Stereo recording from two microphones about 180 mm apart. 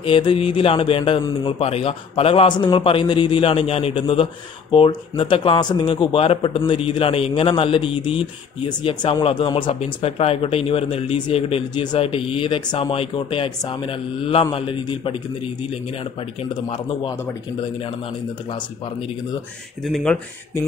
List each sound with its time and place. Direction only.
0.0 s a man's voice: 30° left (ahead or behind)
19.8 s speech: centre (ahead or behind)